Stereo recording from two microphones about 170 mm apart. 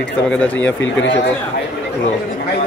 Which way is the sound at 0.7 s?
90° left.